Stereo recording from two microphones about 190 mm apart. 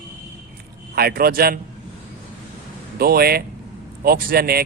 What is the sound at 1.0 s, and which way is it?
Speech, 55° right (ahead or behind).